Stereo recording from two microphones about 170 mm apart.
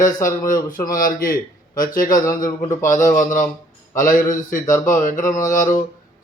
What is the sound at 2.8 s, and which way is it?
A man's voice, 50° left (ahead or behind).